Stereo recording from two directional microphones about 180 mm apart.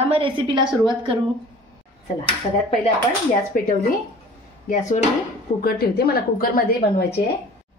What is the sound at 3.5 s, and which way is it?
Speech, 55° left (ahead or behind).